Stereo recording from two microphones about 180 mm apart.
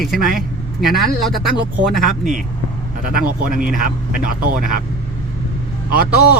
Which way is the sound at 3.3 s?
50° right (ahead or behind).